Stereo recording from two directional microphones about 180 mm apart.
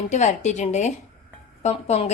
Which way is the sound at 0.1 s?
40° left (ahead or behind).